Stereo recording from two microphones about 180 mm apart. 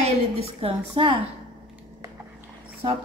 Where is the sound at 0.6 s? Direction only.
30° right (ahead or behind).